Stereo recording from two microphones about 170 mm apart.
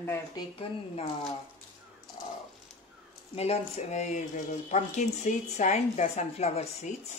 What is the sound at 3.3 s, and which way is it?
Speech, 40° left (ahead or behind).